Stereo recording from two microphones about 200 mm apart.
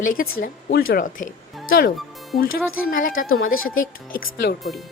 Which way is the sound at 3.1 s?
90° left.